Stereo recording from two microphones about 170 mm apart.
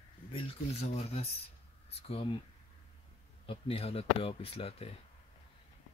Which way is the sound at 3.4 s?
35° left (ahead or behind).